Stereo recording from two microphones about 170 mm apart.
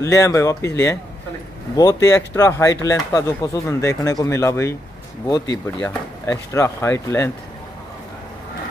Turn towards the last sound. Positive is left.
turn(degrees=15)  # may be behind; listen again after turning